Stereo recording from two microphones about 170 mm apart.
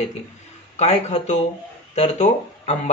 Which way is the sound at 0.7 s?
40° left (ahead or behind).